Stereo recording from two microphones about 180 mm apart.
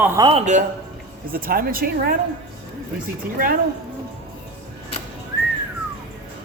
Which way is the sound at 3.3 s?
55° right (ahead or behind).